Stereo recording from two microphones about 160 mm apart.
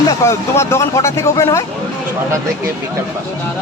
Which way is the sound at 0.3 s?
15° left (ahead or behind).